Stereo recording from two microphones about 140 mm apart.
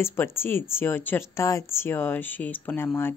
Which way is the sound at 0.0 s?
20° left (ahead or behind).